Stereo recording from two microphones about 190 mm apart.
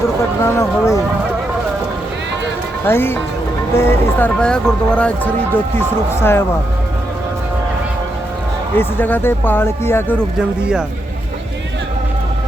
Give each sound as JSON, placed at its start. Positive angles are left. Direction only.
{"t": 0.4, "sound": "a sound", "side_deg": 15}
{"t": 2.8, "sound": "speech", "side_deg": 10}
{"t": 8.7, "sound": "speech", "side_deg": 10}
{"t": 10.6, "sound": "speech", "side_deg": -5}